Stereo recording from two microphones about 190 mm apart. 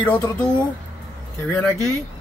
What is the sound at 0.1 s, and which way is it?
Speech, 20° left (ahead or behind).